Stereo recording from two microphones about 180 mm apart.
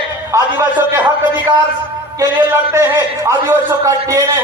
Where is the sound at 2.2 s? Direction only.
15° right (ahead or behind).